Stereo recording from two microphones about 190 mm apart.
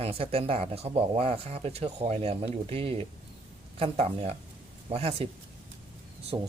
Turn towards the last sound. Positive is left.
turn(degrees=-25)  # may be behind; listen again after turning